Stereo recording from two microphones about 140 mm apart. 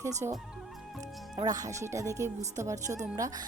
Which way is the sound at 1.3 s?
25° right (ahead or behind).